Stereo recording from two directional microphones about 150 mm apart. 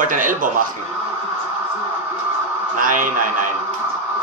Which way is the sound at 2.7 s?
60° right (ahead or behind).